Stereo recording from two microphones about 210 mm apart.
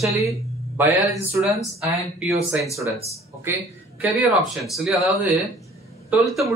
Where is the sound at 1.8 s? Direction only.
15° right (ahead or behind).